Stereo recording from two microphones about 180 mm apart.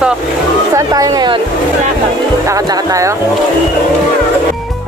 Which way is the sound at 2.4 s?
20° right (ahead or behind).